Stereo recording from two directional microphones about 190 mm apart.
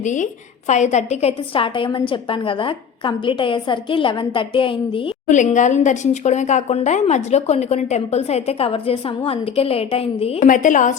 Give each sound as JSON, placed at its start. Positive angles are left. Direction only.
{"t": 0.0, "sound": "a woman's voice", "side_deg": 40}
{"t": 5.3, "sound": "a woman's voice", "side_deg": 40}
{"t": 10.5, "sound": "a woman's voice", "side_deg": 45}